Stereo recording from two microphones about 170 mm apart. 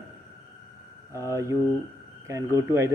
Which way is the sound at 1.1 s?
15° right (ahead or behind).